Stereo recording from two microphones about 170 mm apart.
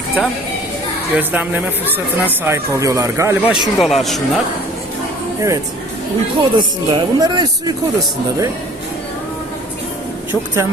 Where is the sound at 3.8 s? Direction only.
Centre (ahead or behind).